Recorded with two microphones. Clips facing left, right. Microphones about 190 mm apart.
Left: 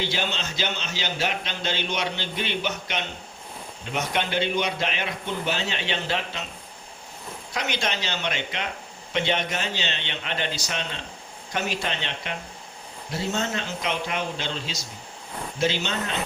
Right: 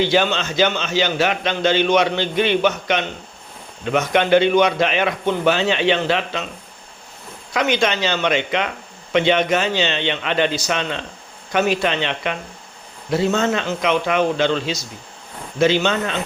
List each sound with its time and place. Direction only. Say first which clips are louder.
0.1 s a man's voice: right 11 dB; 80° right
3.8 s a man's voice: right 10 dB; 75° right (ahead or behind); by 6.4 s 90° right
7.5 s a man's voice: right 10 dB; 90° right
11.5 s a man's voice: right 10 dB; 80° right
15.5 s a man's voice: right 9 dB; 85° right